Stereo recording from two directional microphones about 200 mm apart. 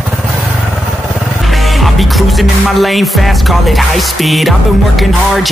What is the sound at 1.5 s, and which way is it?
Music, centre (ahead or behind).